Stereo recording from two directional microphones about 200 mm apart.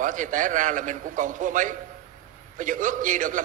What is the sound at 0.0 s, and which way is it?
A man's voice, 40° right (ahead or behind).